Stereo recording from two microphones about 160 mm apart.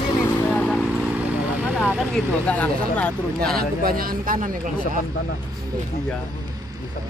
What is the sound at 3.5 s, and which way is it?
Speech, 65° right (ahead or behind).